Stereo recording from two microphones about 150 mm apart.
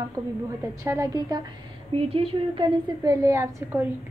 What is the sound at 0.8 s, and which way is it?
Speech, 20° right (ahead or behind).